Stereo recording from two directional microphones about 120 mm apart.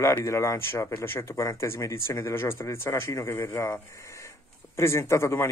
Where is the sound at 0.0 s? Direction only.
25° left (ahead or behind).